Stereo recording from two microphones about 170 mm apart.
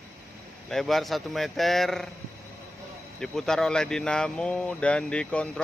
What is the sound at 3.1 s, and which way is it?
Speech, 5° left (ahead or behind).